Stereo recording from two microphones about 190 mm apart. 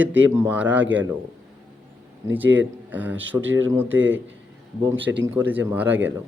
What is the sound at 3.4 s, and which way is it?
Speech, 90° right.